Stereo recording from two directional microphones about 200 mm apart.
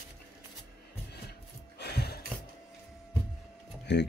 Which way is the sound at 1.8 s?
55° left (ahead or behind).